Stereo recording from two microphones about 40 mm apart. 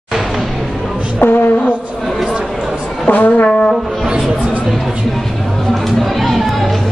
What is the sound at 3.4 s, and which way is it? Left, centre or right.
Music, centre.